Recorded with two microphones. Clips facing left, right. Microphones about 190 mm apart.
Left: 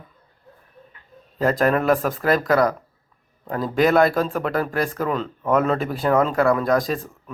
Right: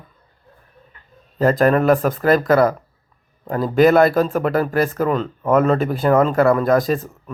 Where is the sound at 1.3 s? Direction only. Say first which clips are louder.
Right 4 dB; centre (ahead or behind).